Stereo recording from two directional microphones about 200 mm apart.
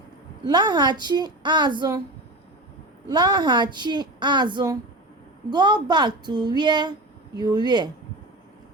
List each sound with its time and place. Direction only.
0.4 s a woman's voice: 20° right (ahead or behind)
3.1 s a woman's voice: 20° right (ahead or behind)